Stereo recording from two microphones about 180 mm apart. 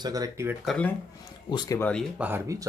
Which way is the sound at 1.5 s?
25° left (ahead or behind).